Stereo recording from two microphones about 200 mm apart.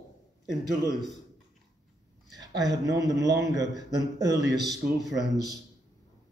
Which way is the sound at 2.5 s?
15° right (ahead or behind).